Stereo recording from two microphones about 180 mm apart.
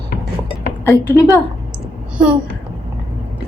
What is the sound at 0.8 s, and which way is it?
Speech, 15° left (ahead or behind).